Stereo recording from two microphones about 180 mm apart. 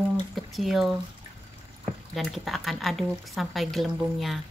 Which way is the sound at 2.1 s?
Centre (ahead or behind).